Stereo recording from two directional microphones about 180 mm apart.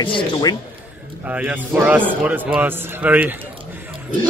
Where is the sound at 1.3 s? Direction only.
10° right (ahead or behind).